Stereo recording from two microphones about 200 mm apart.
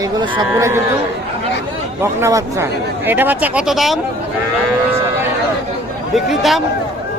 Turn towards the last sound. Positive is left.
turn(degrees=0)  # may be behind; listen again after turning